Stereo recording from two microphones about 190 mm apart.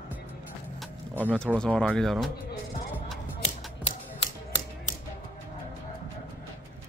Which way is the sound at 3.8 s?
35° left (ahead or behind).